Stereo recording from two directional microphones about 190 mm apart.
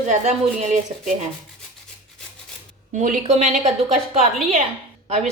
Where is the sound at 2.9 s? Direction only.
40° right (ahead or behind).